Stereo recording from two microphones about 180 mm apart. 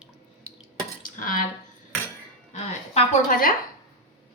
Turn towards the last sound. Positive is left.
turn(degrees=45)  # may be behind; listen again after turning